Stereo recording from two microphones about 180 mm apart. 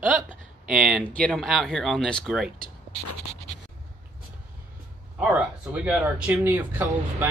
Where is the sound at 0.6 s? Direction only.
5° right (ahead or behind).